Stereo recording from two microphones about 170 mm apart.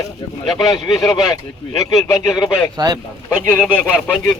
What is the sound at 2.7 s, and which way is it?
Speech, 25° right (ahead or behind).